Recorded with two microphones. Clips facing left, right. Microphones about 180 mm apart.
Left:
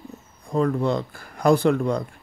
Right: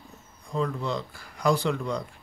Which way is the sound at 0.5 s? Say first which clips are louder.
Left 7 dB; 55° left (ahead or behind).